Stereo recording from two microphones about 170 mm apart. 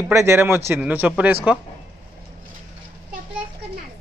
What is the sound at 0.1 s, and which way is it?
Speech, 15° right (ahead or behind).